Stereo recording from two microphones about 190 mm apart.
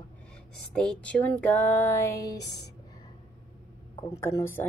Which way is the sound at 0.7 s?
5° left (ahead or behind).